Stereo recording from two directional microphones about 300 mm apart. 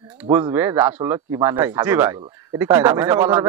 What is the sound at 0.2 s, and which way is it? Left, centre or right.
Speech, centre.